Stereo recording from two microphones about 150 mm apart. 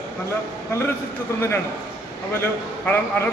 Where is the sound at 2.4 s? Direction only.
15° left (ahead or behind).